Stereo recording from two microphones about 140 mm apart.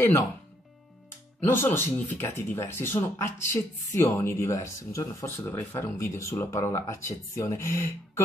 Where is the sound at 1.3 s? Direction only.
15° left (ahead or behind).